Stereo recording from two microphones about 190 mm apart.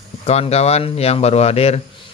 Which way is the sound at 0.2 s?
35° left (ahead or behind).